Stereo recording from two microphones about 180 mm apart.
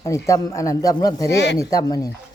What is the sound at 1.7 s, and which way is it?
Speech, 20° left (ahead or behind).